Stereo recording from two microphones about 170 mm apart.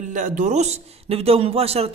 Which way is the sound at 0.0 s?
50° right (ahead or behind).